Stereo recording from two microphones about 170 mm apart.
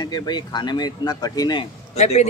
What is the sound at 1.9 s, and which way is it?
Speech, 40° left (ahead or behind).